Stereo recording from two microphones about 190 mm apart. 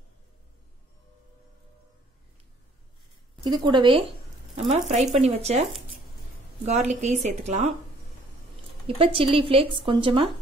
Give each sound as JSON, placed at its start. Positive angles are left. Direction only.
{"t": 3.4, "sound": "speech", "side_deg": -25}
{"t": 4.9, "sound": "a woman's voice", "side_deg": -35}
{"t": 6.6, "sound": "a woman's voice", "side_deg": -35}
{"t": 8.8, "sound": "speech", "side_deg": -30}